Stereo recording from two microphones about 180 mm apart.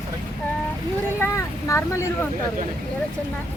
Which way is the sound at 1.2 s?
15° left (ahead or behind).